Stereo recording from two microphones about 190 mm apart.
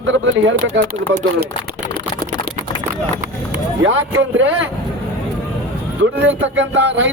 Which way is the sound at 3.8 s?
75° right (ahead or behind).